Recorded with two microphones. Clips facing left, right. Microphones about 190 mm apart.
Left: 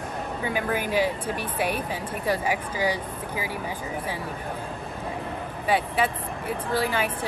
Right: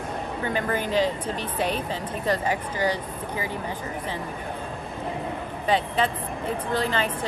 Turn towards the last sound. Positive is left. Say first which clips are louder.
# even
turn(degrees=10)  # may be behind; listen again after turning